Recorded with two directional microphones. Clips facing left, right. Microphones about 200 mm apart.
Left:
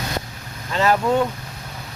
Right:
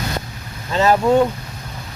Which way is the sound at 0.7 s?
25° right (ahead or behind).